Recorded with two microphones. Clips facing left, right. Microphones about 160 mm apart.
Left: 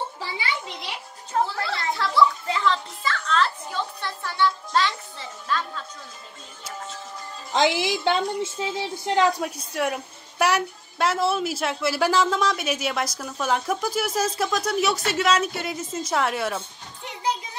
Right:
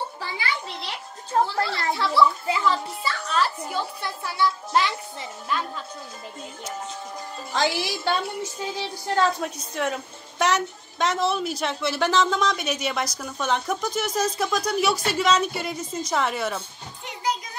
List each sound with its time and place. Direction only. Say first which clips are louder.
0.2 s a child's voice: even; 15° left (ahead or behind)
1.4 s a child's voice: right 2 dB; centre (ahead or behind)
7.5 s a woman's voice: left 4 dB; 20° left (ahead or behind)
9.4 s a woman's voice: left 1 dB; 5° left (ahead or behind)